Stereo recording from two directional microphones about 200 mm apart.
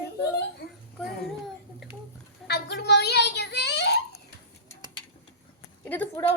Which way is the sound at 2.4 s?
55° left (ahead or behind).